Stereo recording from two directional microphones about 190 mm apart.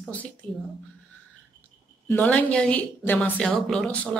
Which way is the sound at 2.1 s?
10° left (ahead or behind).